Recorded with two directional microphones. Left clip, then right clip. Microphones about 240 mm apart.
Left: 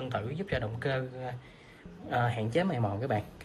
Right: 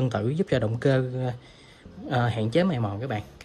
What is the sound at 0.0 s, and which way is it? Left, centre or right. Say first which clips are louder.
Speech: right 8 dB; right.